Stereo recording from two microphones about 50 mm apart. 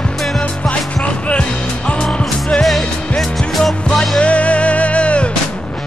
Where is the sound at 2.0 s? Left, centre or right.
Centre.